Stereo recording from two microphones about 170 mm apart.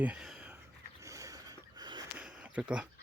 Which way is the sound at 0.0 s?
5° right (ahead or behind).